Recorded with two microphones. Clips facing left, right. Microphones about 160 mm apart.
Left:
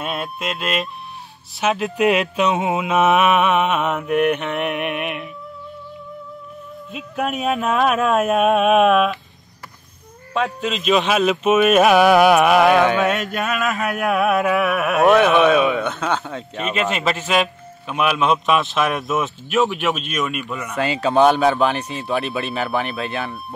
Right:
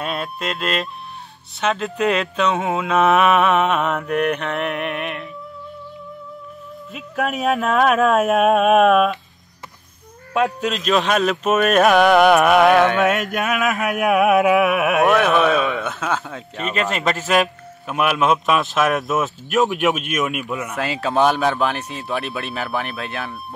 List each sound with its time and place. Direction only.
0.0 s speech: centre (ahead or behind)
1.8 s speech: 15° left (ahead or behind)
2.9 s speech: 5° left (ahead or behind)
6.9 s speech: centre (ahead or behind)
10.3 s speech: centre (ahead or behind)
14.1 s carnatic music: 10° right (ahead or behind)
15.0 s speech: centre (ahead or behind)